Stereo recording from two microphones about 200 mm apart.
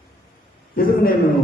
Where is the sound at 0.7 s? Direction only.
45° left (ahead or behind).